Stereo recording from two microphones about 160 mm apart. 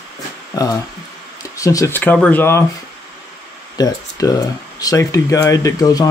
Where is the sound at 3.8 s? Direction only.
25° left (ahead or behind).